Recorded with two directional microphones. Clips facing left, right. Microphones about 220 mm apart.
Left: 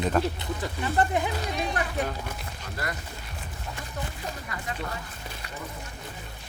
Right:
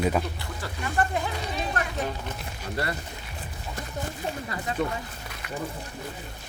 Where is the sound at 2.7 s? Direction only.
30° right (ahead or behind).